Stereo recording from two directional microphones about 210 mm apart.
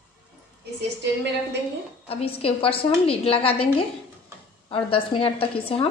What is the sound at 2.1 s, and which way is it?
A woman's voice, 25° left (ahead or behind).